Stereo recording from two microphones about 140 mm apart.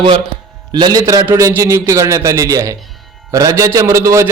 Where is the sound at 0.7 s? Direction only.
30° right (ahead or behind).